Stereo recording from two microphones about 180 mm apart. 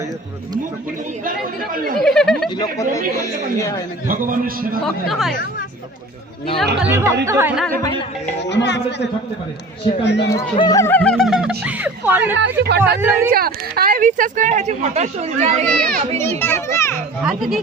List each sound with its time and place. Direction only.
1.2 s speech: 50° right (ahead or behind)
2.0 s speech: centre (ahead or behind)
2.6 s speech: 20° left (ahead or behind)
4.1 s speech: 50° right (ahead or behind)
5.0 s speech: centre (ahead or behind)
6.8 s speech: 15° right (ahead or behind)
8.4 s speech: 75° left (ahead or behind)
10.2 s speech: 20° left (ahead or behind); by 12.4 s 10° right (ahead or behind)
12.6 s speech: 65° right (ahead or behind)
13.0 s speech: 10° right (ahead or behind)
13.3 s speech: 55° right (ahead or behind); by 15.6 s 35° right (ahead or behind)
15.8 s speech: 55° right (ahead or behind)
16.1 s a child's voice: 15° left (ahead or behind)
17.2 s speech: centre (ahead or behind)